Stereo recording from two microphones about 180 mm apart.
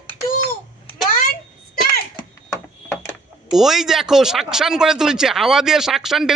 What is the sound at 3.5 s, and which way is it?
Speech, centre (ahead or behind).